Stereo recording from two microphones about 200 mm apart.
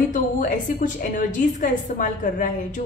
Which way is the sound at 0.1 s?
40° left (ahead or behind).